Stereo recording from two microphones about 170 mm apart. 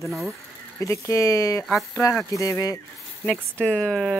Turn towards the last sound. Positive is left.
turn(degrees=0)  # may be behind; listen again after turning